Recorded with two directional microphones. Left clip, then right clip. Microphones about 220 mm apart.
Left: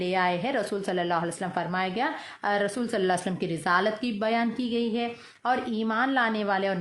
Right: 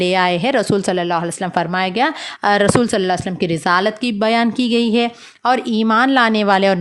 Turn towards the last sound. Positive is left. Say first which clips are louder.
# right 13 dB
turn(degrees=-40)  # may be behind; listen again after turning